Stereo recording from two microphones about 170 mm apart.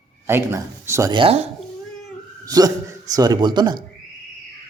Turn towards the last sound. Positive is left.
turn(degrees=-25)  # may be behind; listen again after turning